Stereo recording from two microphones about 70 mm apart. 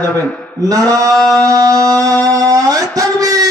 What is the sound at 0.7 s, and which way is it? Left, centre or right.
Music, right.